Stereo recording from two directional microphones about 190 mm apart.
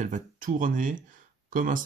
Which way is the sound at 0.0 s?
45° right (ahead or behind).